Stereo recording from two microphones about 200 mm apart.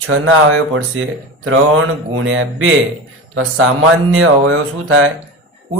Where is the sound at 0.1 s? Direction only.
90° right.